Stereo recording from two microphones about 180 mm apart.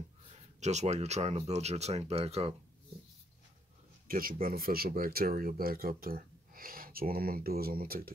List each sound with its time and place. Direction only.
0.6 s speech: 40° right (ahead or behind)
4.1 s speech: 55° right (ahead or behind)